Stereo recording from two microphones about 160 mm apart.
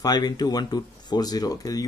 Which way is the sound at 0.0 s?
25° left (ahead or behind).